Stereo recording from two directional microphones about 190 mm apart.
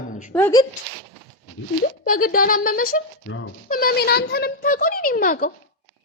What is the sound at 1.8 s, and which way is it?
Speech, 50° left (ahead or behind).